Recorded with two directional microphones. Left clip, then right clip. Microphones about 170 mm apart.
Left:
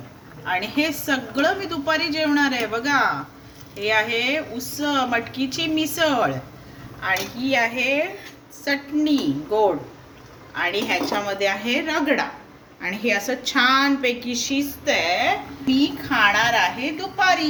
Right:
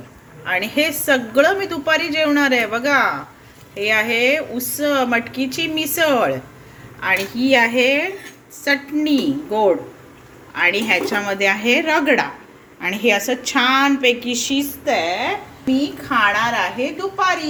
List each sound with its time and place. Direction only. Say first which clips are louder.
0.4 s a woman's voice: right 4 dB; 25° right (ahead or behind)
7.0 s a woman's voice: right 5 dB; 45° right (ahead or behind)